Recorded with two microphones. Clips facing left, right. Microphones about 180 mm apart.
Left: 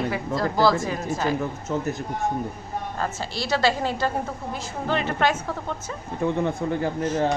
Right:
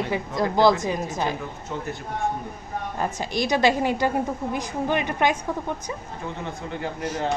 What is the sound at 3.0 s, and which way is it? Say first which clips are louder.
A woman's voice: right 6 dB; 15° right (ahead or behind).